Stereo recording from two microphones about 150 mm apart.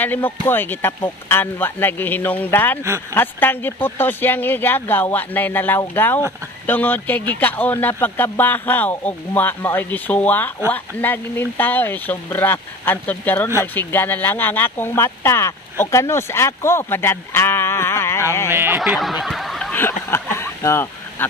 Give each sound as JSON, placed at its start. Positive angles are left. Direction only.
{"t": 0.0, "sound": "speech", "side_deg": 10}
{"t": 2.8, "sound": "speech", "side_deg": -20}
{"t": 3.2, "sound": "speech", "side_deg": 15}
{"t": 18.5, "sound": "speech", "side_deg": -15}
{"t": 18.8, "sound": "snicker", "side_deg": 0}
{"t": 19.7, "sound": "speech", "side_deg": 15}